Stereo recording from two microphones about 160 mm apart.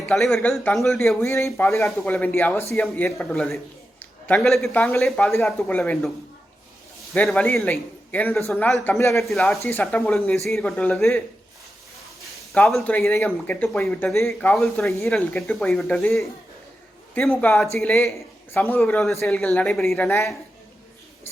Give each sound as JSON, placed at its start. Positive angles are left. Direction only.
{"t": 0.1, "sound": "speech", "side_deg": 0}
{"t": 1.2, "sound": "speech", "side_deg": 20}
{"t": 4.0, "sound": "a sound", "side_deg": 5}
{"t": 4.6, "sound": "speech", "side_deg": 10}
{"t": 5.3, "sound": "speech", "side_deg": 15}
{"t": 7.1, "sound": "speech", "side_deg": 5}
{"t": 9.1, "sound": "speech", "side_deg": 0}
{"t": 12.5, "sound": "speech", "side_deg": 5}
{"t": 17.2, "sound": "speech", "side_deg": 10}